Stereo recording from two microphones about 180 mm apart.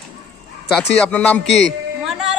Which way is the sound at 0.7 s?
5° left (ahead or behind).